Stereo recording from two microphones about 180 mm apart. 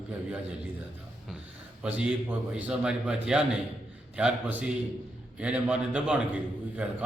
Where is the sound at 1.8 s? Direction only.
5° right (ahead or behind).